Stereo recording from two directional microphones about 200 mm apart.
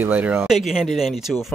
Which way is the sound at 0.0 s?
10° right (ahead or behind).